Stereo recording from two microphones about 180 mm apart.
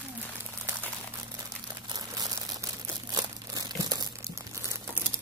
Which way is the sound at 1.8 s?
20° right (ahead or behind).